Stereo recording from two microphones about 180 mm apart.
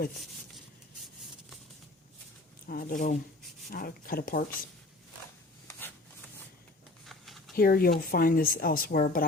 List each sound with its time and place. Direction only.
2.6 s speech: 55° left (ahead or behind)
7.0 s a sound: centre (ahead or behind)
7.5 s speech: 55° left (ahead or behind)